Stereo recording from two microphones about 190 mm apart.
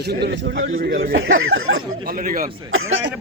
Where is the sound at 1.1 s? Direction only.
90° right.